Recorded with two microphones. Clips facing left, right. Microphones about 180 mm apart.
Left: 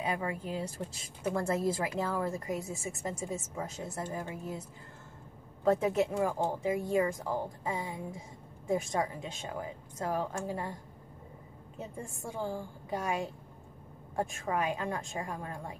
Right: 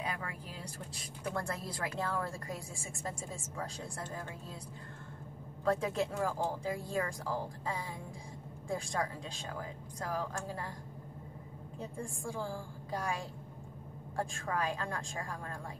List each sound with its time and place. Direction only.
0.0 s a woman's voice: 25° left (ahead or behind)
11.8 s a woman's voice: 20° left (ahead or behind)